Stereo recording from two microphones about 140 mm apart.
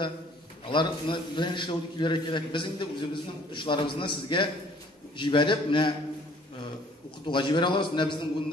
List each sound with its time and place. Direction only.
0.7 s a man's voice: 35° left (ahead or behind)
7.2 s a man's voice: 35° left (ahead or behind)